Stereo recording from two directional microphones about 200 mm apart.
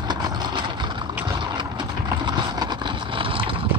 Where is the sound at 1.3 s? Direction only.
25° right (ahead or behind).